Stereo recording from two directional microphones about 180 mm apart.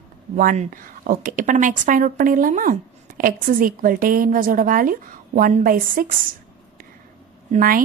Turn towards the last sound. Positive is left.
turn(degrees=-50)  # may be behind; listen again after turning